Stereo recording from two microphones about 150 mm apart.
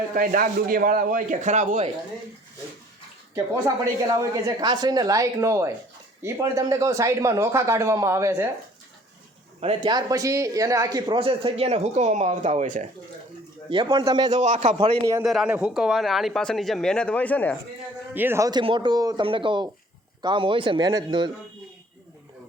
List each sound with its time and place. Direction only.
0.1 s speech: 65° right (ahead or behind)
4.1 s speech: 25° right (ahead or behind)
9.6 s a man's voice: 40° right (ahead or behind)
9.9 s speech: 25° right (ahead or behind); by 12.9 s 55° right (ahead or behind)
13.7 s speech: 35° right (ahead or behind)
14.3 s a man's voice: 50° right (ahead or behind)
15.2 s speech: 5° right (ahead or behind)
18.1 s speech: 15° right (ahead or behind)